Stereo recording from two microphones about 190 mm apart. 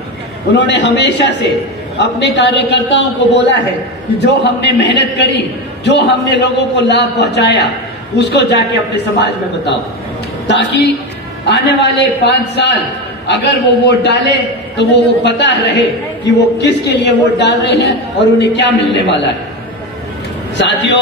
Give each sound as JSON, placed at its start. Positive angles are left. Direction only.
{"t": 0.6, "sound": "a man's voice", "side_deg": 65}
{"t": 20.5, "sound": "a man's voice", "side_deg": 70}